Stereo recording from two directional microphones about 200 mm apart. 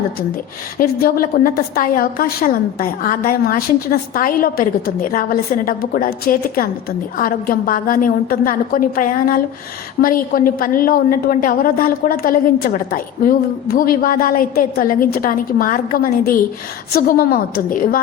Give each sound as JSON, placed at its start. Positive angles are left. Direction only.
{"t": 0.8, "sound": "a woman's voice", "side_deg": 50}